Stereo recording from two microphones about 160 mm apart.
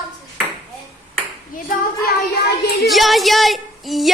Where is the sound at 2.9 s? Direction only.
Centre (ahead or behind).